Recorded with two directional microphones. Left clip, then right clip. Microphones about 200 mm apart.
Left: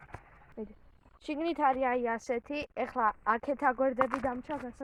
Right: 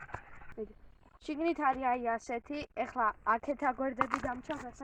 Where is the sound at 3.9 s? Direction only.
20° right (ahead or behind).